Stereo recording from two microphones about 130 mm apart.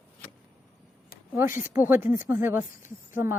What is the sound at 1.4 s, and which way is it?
Speech, 20° right (ahead or behind).